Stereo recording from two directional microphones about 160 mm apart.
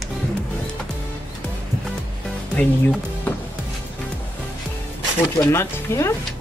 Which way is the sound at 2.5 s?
10° left (ahead or behind).